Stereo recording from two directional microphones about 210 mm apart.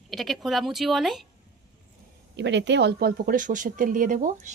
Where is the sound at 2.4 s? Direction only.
55° right (ahead or behind); by 4.5 s 35° right (ahead or behind).